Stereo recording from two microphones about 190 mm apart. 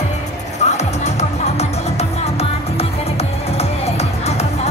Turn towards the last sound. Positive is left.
turn(degrees=35)  # may be behind; listen again after turning